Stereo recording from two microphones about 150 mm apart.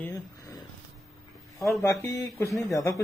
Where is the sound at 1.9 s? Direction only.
20° left (ahead or behind).